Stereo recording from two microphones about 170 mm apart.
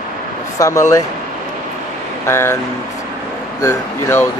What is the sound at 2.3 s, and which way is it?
Speech, 15° left (ahead or behind).